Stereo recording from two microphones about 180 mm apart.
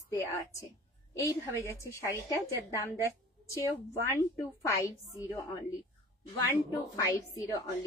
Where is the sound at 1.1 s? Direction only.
15° left (ahead or behind).